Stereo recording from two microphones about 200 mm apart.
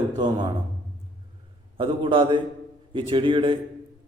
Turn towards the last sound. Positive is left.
turn(degrees=-25)  # may be behind; listen again after turning